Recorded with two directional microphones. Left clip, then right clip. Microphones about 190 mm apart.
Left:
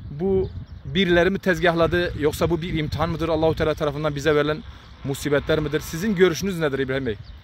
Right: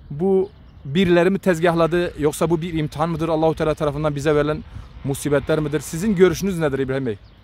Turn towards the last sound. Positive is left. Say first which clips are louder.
# right 2 dB
turn(degrees=-15)  # may be behind; listen again after turning